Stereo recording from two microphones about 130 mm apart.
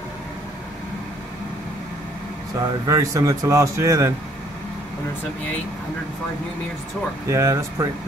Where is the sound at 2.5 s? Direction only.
30° right (ahead or behind).